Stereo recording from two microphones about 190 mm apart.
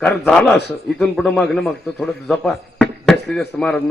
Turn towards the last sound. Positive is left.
turn(degrees=5)  # may be behind; listen again after turning